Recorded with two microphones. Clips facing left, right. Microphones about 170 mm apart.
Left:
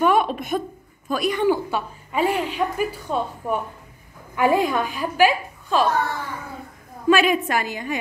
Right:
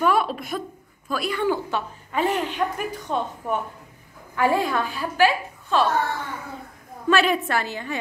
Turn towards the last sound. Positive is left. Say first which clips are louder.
# left 2 dB
turn(degrees=15)  # may be behind; listen again after turning